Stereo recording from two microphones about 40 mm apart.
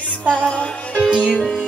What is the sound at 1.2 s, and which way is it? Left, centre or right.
Music, centre.